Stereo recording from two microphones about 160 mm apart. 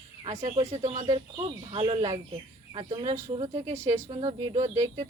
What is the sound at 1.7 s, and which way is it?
Speech, 35° right (ahead or behind).